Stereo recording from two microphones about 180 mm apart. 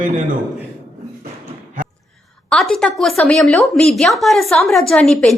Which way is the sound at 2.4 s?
Centre (ahead or behind).